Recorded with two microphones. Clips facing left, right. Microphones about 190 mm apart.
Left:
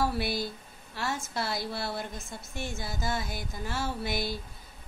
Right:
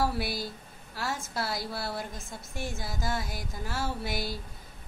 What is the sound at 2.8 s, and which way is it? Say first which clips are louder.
Speech: left 1 dB; 10° right (ahead or behind).